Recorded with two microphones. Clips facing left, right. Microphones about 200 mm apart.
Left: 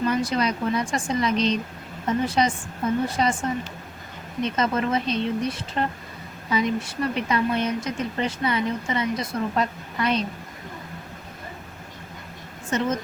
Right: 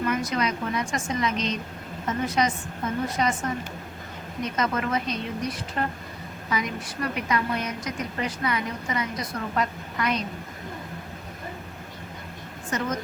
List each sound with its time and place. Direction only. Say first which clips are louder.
0.0 s a woman's voice: left 3 dB; 30° left (ahead or behind)
4.4 s a woman's voice: left 3 dB; 30° left (ahead or behind)
12.7 s a woman's voice: left 4 dB; 25° left (ahead or behind)